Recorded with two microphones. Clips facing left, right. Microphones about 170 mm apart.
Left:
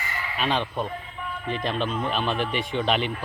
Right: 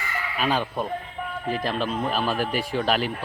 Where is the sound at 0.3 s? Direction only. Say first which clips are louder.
Right 1 dB; 5° right (ahead or behind).